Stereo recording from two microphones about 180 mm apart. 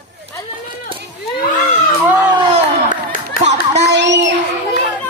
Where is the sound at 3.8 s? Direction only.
70° right (ahead or behind).